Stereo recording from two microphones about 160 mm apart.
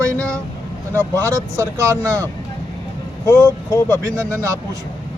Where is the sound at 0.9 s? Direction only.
20° right (ahead or behind).